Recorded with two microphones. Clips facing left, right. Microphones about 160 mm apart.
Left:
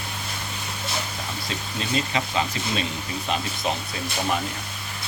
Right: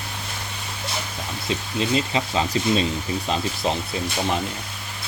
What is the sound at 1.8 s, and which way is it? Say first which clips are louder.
Speech: right 3 dB; 25° right (ahead or behind).